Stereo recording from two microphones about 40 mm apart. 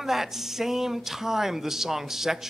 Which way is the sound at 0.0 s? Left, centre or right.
Centre.